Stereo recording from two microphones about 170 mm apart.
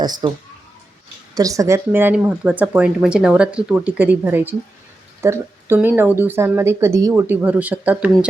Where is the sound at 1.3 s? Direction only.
20° right (ahead or behind).